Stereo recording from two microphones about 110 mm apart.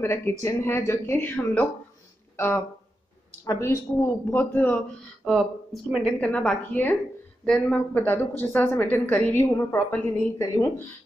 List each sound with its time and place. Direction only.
0.0 s speech: 25° left (ahead or behind)
5.2 s speech: centre (ahead or behind)
6.2 s a woman's voice: 10° left (ahead or behind)
7.4 s speech: 5° left (ahead or behind)
7.9 s a woman's voice: 15° left (ahead or behind)